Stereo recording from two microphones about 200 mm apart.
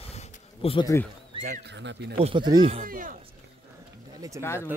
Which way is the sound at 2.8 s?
45° right (ahead or behind).